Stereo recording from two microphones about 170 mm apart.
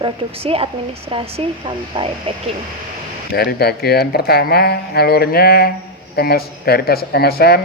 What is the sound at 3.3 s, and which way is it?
Speech, 65° left (ahead or behind).